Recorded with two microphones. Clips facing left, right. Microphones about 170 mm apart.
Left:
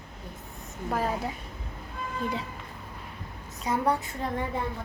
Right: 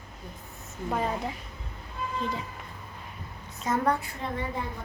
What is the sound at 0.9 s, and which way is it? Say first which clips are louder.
Speech: left 1 dB; 5° left (ahead or behind).